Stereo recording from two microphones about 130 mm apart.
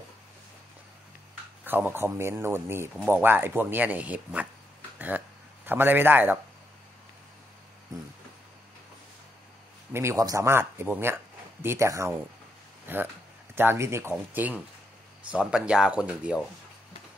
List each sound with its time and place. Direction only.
1.6 s speech: 15° right (ahead or behind)
9.9 s speech: 20° right (ahead or behind); by 16.4 s 5° right (ahead or behind)